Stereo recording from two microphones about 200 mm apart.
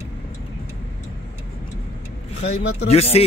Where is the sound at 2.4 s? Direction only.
30° left (ahead or behind).